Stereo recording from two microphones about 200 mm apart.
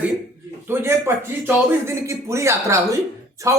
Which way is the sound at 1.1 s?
10° right (ahead or behind).